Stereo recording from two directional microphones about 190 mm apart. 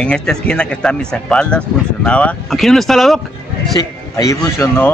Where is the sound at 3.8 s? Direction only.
15° left (ahead or behind).